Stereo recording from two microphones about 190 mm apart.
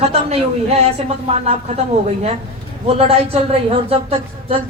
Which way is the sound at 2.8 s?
30° right (ahead or behind).